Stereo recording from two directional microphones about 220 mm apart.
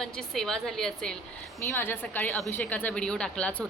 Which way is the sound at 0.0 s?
Centre (ahead or behind).